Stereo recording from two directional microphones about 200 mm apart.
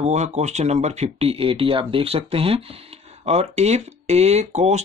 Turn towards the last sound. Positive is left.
turn(degrees=-35)  # may be behind; listen again after turning